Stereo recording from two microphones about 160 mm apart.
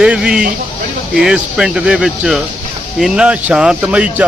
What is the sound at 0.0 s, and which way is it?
Speech, 5° right (ahead or behind).